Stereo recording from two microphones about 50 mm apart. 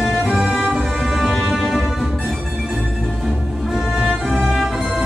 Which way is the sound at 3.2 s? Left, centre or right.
Centre.